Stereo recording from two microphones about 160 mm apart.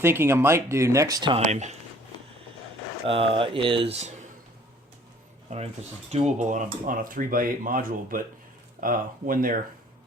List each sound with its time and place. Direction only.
0.0 s speech: 15° right (ahead or behind)
1.4 s speech: 45° right (ahead or behind)
3.1 s speech: 35° right (ahead or behind)
6.1 s speech: 45° right (ahead or behind); by 9.6 s 60° right (ahead or behind)